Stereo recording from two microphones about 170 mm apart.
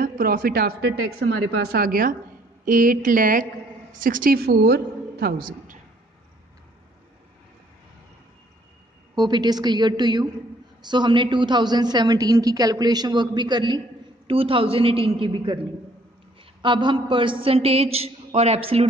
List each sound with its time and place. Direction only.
0.0 s a woman's voice: 55° right (ahead or behind)
9.1 s a woman's voice: 25° right (ahead or behind)
16.6 s a woman's voice: 30° right (ahead or behind)